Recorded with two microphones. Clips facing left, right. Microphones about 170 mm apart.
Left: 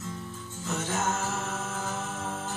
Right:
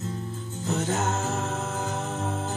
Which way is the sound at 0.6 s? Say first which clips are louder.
Right 4 dB; 35° right (ahead or behind).